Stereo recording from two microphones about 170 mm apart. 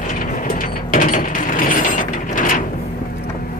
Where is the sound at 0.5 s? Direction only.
55° left (ahead or behind).